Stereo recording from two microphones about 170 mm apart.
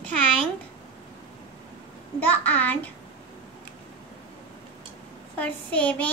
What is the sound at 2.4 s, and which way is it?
Speech, 10° left (ahead or behind).